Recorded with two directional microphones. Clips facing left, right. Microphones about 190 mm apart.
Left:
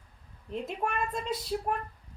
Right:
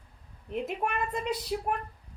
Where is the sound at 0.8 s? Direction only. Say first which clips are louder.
Left 1 dB; 15° right (ahead or behind).